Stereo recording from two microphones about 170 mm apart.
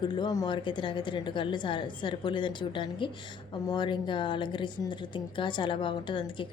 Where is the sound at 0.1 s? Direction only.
25° left (ahead or behind).